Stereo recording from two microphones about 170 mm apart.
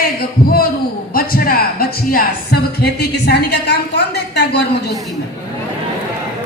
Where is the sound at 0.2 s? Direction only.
60° left (ahead or behind); by 4.6 s 80° left.